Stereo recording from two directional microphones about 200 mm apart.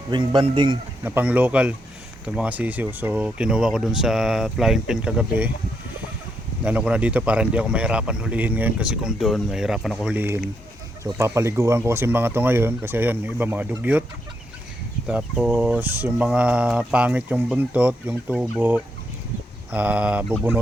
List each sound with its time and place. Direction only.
0.1 s speech: 25° right (ahead or behind)
1.0 s speech: 10° right (ahead or behind)
6.7 s speech: 5° right (ahead or behind)
15.0 s speech: 5° right (ahead or behind)